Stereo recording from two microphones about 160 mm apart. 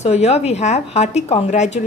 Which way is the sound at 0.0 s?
45° left (ahead or behind).